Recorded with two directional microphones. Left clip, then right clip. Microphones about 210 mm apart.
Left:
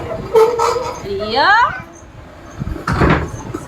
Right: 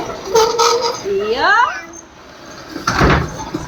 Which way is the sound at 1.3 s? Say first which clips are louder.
Left 2 dB; 10° left (ahead or behind).